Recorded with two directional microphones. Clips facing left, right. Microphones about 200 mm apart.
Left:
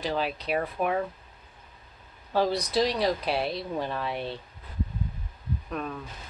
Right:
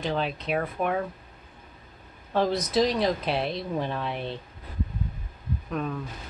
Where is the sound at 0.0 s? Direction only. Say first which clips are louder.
Right 1 dB; centre (ahead or behind).